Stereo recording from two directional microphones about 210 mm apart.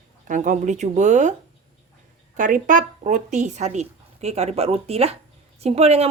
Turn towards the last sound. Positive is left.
turn(degrees=-30)  # may be behind; listen again after turning